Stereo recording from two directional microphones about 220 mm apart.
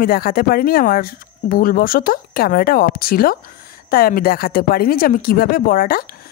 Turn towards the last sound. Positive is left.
turn(degrees=40)  # may be behind; listen again after turning